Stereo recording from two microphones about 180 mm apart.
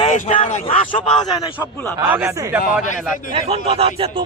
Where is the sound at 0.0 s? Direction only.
35° left (ahead or behind).